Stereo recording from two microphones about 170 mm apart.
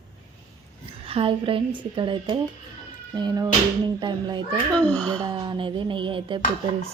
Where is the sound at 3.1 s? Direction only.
25° right (ahead or behind).